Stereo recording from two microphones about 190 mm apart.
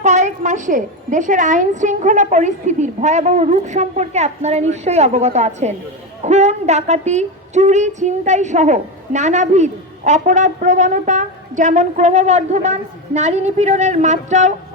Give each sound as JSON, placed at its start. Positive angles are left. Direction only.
{"t": 0.0, "sound": "a woman's voice", "side_deg": -40}